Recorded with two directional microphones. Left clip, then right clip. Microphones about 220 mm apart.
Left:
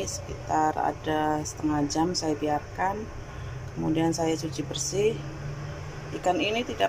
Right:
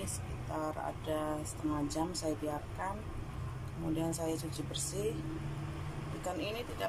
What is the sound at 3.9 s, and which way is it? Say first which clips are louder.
Speech: left 10 dB; 10° left (ahead or behind).